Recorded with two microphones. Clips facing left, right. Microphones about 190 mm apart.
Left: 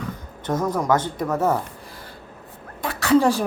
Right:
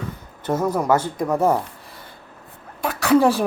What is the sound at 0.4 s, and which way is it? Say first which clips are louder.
Speech: right 2 dB; 10° right (ahead or behind).